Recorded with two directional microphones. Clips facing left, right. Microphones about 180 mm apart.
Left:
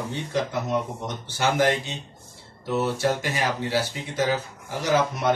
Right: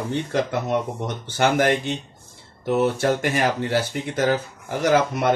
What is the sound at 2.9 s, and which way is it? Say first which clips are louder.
Speech: right 3 dB; 55° right (ahead or behind).